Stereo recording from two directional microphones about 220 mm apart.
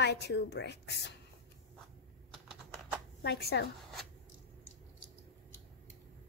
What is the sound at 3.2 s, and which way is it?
Speech, 45° left (ahead or behind).